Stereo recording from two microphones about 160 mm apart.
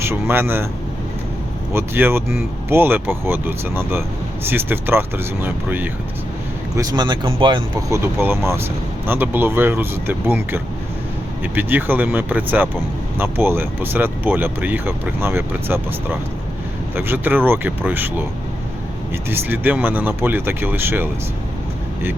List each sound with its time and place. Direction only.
0.0 s speech: 15° right (ahead or behind)
1.7 s speech: 15° right (ahead or behind)
6.7 s speech: 25° right (ahead or behind)
7.9 s speech: 15° right (ahead or behind)
19.3 s speech: 10° right (ahead or behind)